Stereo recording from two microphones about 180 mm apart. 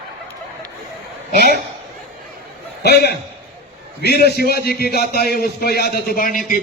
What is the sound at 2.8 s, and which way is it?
A man's voice, 65° left (ahead or behind).